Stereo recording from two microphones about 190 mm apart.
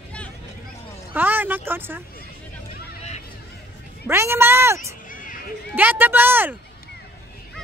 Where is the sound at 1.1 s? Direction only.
10° right (ahead or behind).